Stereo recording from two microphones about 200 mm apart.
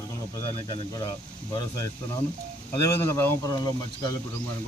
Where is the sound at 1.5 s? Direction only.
15° left (ahead or behind).